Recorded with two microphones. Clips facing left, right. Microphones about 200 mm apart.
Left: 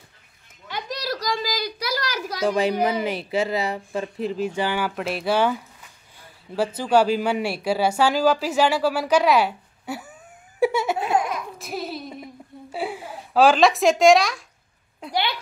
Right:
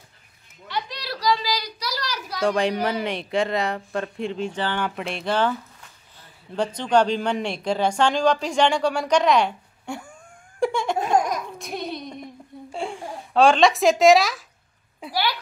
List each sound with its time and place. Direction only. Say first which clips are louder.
0.7 s a sound: left 2 dB; 45° left (ahead or behind)
2.4 s a woman's voice: left 1 dB; 5° left (ahead or behind)
10.6 s laughter: left 2 dB; 5° left (ahead or behind)
11.0 s a sound: right 2 dB; 40° right (ahead or behind)
11.5 s babbling: even; 5° left (ahead or behind)
12.7 s speech: left 1 dB; 5° left (ahead or behind)